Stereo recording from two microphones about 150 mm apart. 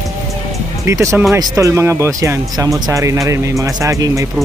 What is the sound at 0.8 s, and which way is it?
Speech, 20° right (ahead or behind).